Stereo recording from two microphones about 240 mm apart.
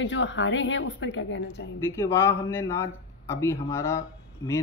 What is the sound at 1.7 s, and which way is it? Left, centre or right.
Speech, centre.